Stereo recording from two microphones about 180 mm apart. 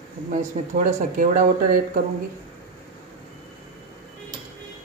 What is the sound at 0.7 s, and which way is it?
Speech, 45° right (ahead or behind).